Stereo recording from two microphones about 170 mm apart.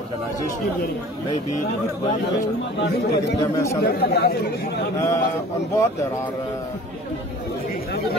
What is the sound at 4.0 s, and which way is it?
Speech, 65° left (ahead or behind).